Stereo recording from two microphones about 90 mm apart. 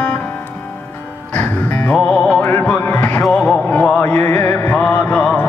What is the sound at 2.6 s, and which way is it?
Music, 15° left (ahead or behind).